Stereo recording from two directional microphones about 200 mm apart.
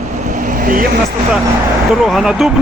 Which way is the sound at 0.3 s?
40° right (ahead or behind).